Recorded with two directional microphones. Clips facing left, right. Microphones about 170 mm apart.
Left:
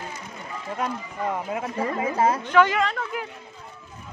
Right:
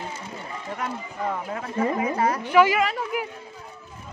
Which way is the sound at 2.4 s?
10° right (ahead or behind).